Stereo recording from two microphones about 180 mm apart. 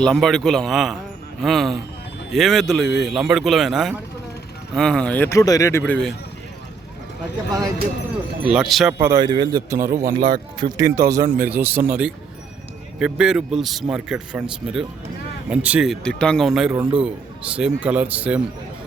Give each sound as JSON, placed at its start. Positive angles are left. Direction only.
{"t": 0.0, "sound": "a man's voice", "side_deg": 0}
{"t": 5.8, "sound": "a man's voice", "side_deg": 5}
{"t": 8.4, "sound": "a man's voice", "side_deg": 0}
{"t": 9.1, "sound": "a man's voice", "side_deg": -25}